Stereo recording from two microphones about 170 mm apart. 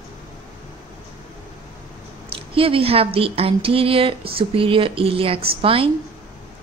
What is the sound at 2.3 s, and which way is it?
Speech, 35° right (ahead or behind).